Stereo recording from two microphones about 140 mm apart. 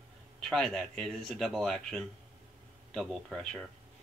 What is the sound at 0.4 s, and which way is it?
Speech, 5° left (ahead or behind).